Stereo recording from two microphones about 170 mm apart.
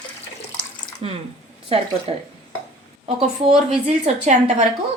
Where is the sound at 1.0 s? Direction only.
35° right (ahead or behind).